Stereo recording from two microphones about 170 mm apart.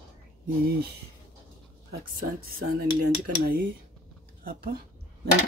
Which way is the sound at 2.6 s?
90° right.